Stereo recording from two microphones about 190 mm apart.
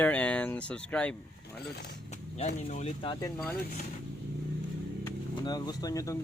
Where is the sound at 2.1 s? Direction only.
40° left (ahead or behind).